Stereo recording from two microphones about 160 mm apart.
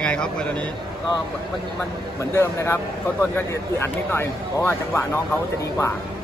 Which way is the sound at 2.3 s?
15° left (ahead or behind).